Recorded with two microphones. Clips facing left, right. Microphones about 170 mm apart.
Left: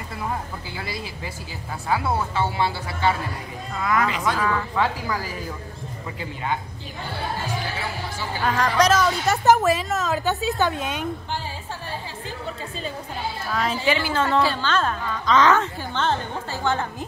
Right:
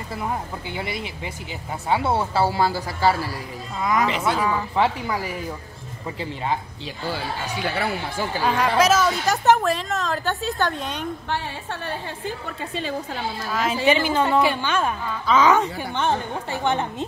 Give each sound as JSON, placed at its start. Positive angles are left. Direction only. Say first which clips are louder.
{"t": 0.7, "sound": "speech", "louder": "right 3 dB", "side_deg": -20}
{"t": 3.8, "sound": "a woman's voice", "louder": "right 1 dB", "side_deg": -20}
{"t": 7.1, "sound": "speech", "louder": "even", "side_deg": -75}
{"t": 8.5, "sound": "a woman's voice", "louder": "even", "side_deg": -5}
{"t": 11.2, "sound": "music", "louder": "right 3 dB", "side_deg": -65}
{"t": 13.5, "sound": "a woman's voice", "louder": "right 1 dB", "side_deg": -5}
{"t": 13.8, "sound": "a woman's voice", "louder": "right 5 dB", "side_deg": -15}